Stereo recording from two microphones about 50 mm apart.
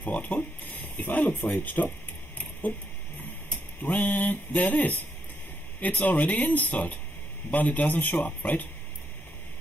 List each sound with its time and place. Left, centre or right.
0.0 s speech: left
3.4 s speech: left